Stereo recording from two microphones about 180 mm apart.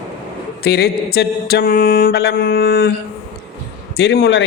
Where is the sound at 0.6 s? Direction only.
60° left (ahead or behind).